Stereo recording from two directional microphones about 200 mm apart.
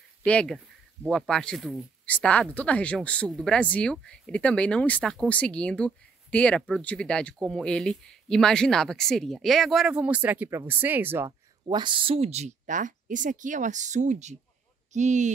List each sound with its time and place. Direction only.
0.2 s speech: 5° left (ahead or behind); by 11.3 s 10° right (ahead or behind)
11.6 s speech: 25° right (ahead or behind)